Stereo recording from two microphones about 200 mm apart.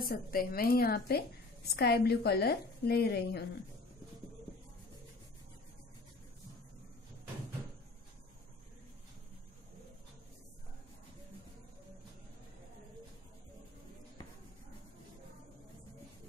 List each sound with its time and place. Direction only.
0.0 s a woman's voice: 45° left (ahead or behind)